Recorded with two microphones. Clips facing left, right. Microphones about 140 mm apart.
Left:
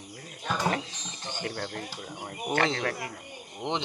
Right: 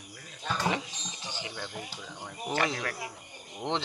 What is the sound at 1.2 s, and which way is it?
Speech, 55° left (ahead or behind).